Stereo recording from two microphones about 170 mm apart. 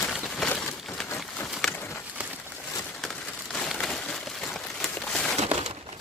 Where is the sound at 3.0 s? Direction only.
Centre (ahead or behind).